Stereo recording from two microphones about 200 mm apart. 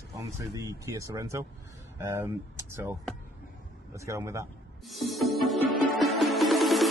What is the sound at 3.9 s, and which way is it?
Speech, 15° right (ahead or behind).